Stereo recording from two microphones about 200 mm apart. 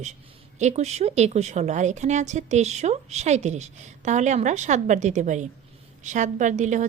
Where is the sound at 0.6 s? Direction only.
35° right (ahead or behind).